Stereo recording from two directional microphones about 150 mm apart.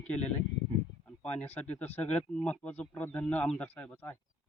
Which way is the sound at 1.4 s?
10° left (ahead or behind).